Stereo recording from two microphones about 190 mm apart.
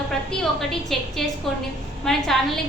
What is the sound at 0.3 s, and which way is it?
A woman's voice, centre (ahead or behind).